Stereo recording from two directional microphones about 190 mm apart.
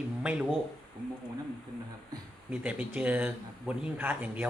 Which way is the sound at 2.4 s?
5° right (ahead or behind).